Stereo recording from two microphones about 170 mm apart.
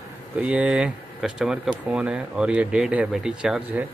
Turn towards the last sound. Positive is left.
turn(degrees=-5)  # may be behind; listen again after turning